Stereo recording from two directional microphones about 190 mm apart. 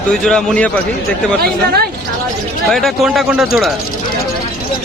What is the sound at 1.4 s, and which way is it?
Speech, 55° right (ahead or behind).